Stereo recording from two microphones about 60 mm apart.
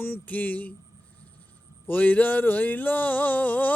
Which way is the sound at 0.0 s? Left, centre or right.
Left.